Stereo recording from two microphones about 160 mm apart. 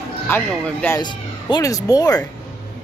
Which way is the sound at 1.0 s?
30° left (ahead or behind).